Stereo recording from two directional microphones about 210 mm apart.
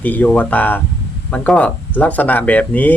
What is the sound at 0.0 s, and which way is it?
Speech, 5° left (ahead or behind).